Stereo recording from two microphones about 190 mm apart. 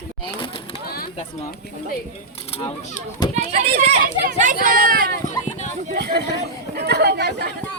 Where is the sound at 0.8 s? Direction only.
55° left (ahead or behind).